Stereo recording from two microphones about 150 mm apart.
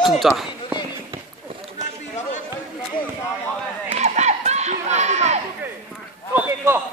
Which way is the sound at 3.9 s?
50° right (ahead or behind).